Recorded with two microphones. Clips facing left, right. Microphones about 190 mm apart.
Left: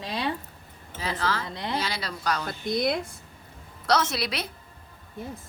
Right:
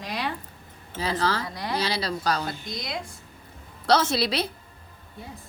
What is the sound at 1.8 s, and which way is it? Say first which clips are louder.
Speech: right 4 dB; 35° right (ahead or behind).